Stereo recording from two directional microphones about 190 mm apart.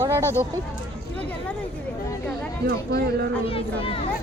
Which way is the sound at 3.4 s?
30° left (ahead or behind).